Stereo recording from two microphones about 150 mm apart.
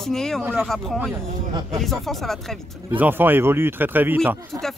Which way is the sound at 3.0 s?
15° right (ahead or behind).